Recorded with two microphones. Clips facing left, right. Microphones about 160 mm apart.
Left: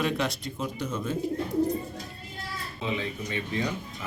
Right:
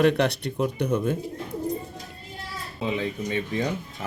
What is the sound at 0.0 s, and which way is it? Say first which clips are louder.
Speech: right 7 dB; 65° right (ahead or behind).